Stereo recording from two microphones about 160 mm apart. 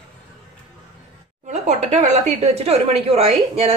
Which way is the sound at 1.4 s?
45° right (ahead or behind).